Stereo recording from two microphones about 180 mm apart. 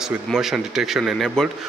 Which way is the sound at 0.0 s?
Centre (ahead or behind).